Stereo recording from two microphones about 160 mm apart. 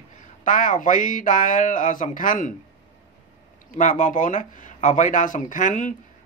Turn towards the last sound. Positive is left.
turn(degrees=50)  # may be behind; listen again after turning